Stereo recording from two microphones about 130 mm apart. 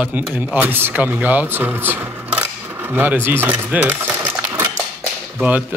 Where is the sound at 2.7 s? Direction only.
15° right (ahead or behind).